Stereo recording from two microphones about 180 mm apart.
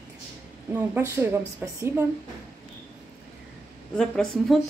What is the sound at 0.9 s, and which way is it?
A woman's voice, 15° right (ahead or behind).